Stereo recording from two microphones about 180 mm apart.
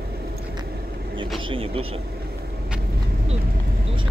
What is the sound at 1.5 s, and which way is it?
Speech, 30° right (ahead or behind).